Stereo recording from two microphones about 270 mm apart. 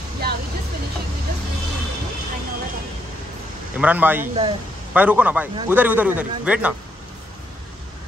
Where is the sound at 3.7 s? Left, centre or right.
Centre.